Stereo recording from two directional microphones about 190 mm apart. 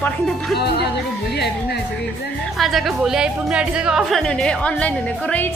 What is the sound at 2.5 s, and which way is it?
A woman's voice, centre (ahead or behind).